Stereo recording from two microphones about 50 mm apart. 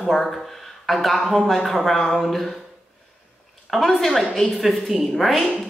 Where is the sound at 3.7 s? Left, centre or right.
Centre.